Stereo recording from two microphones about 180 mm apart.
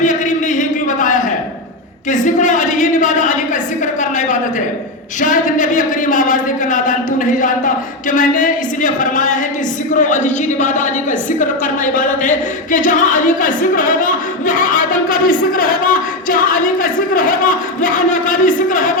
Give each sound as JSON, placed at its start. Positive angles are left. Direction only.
{"t": 0.0, "sound": "a sound", "side_deg": 45}
{"t": 2.0, "sound": "speech", "side_deg": 45}
{"t": 5.2, "sound": "speech", "side_deg": 45}